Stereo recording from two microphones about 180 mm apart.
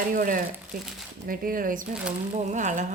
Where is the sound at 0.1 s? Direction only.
50° right (ahead or behind).